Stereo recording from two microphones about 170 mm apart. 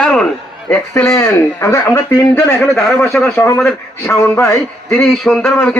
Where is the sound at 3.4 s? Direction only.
15° left (ahead or behind).